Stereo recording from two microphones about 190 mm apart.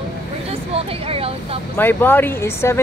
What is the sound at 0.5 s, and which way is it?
Speech, 30° right (ahead or behind).